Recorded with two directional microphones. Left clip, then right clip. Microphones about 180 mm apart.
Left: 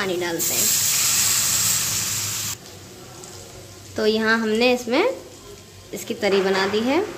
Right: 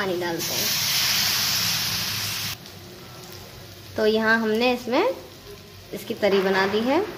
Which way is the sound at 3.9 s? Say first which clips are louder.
Even; centre (ahead or behind).